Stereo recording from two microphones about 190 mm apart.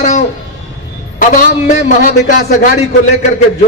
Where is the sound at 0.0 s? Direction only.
40° left (ahead or behind).